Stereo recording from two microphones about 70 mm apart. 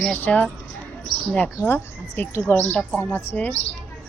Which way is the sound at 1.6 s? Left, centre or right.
Left.